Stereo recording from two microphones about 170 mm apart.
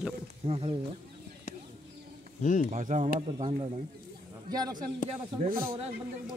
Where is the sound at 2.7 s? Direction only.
45° right (ahead or behind).